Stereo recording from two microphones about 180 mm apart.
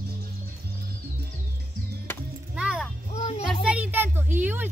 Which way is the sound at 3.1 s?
35° left (ahead or behind).